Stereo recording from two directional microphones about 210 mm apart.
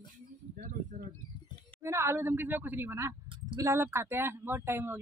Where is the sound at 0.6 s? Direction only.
35° right (ahead or behind).